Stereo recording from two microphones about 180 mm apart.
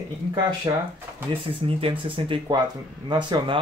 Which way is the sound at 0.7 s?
20° right (ahead or behind).